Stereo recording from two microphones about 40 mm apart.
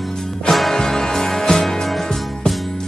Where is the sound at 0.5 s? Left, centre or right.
Centre.